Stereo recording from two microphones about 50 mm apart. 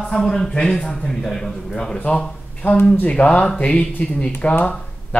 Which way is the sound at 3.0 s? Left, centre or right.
Left.